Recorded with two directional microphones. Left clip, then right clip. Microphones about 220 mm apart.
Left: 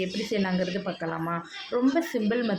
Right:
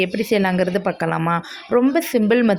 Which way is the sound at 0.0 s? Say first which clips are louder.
Right 10 dB; 45° right (ahead or behind).